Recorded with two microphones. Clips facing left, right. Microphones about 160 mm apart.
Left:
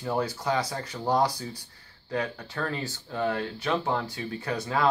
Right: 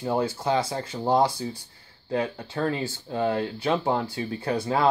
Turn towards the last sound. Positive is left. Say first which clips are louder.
# right 3 dB
turn(degrees=-30)  # may be behind; listen again after turning